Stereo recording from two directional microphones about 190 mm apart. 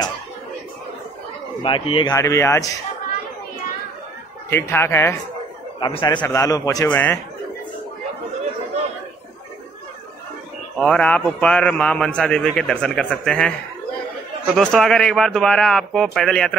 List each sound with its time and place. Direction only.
1.6 s speech: 25° left (ahead or behind)
2.1 s a man's voice: 15° left (ahead or behind)
4.5 s a man's voice: 10° left (ahead or behind)
10.8 s a man's voice: 5° left (ahead or behind)